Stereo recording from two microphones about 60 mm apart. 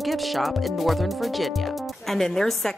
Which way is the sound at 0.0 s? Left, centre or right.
Centre.